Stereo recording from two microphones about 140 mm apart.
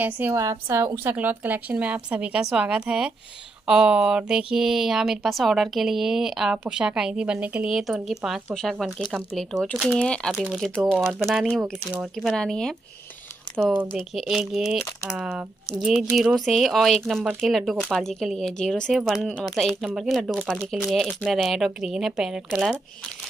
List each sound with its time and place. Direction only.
0.0 s a woman's voice: 15° right (ahead or behind); by 12.7 s 5° left (ahead or behind)
13.9 s speech: centre (ahead or behind)